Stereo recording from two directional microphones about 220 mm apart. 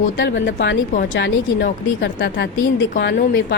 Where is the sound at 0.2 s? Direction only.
55° left (ahead or behind).